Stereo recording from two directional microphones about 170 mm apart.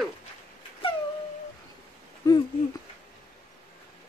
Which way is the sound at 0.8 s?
30° left (ahead or behind).